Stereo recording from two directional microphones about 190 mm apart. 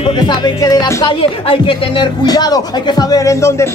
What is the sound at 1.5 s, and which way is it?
Music, 25° left (ahead or behind).